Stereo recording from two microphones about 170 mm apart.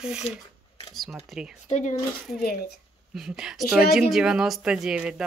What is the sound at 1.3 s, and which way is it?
Speech, centre (ahead or behind).